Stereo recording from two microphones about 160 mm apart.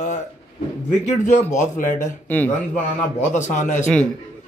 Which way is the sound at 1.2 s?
50° left (ahead or behind).